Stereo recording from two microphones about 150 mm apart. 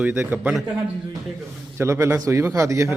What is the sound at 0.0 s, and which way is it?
Speech, 15° right (ahead or behind).